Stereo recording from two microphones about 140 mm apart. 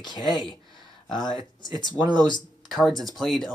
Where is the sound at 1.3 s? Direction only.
30° right (ahead or behind).